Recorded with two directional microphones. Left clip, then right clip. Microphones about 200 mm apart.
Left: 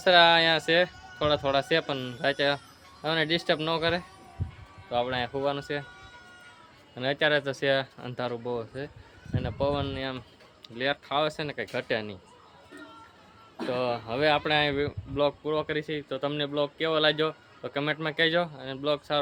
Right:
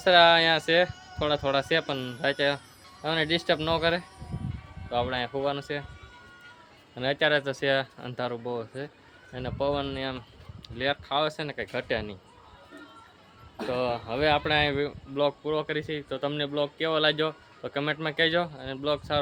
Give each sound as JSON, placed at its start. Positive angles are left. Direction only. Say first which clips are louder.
{"t": 0.0, "sound": "speech", "louder": "right 1 dB", "side_deg": 0}
{"t": 6.9, "sound": "speech", "louder": "right 1 dB", "side_deg": 0}
{"t": 13.7, "sound": "speech", "louder": "even", "side_deg": 5}